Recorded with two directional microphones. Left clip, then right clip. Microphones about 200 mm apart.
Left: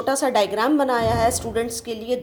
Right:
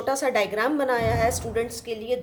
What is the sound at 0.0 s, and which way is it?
A woman's voice, 15° left (ahead or behind).